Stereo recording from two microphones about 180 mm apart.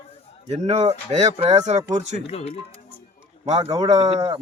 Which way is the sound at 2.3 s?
35° left (ahead or behind).